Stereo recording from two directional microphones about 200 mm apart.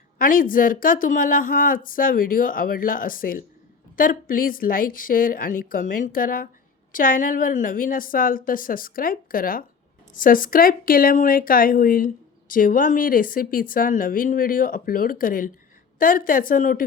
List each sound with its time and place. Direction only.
0.2 s a woman's voice: 45° left (ahead or behind)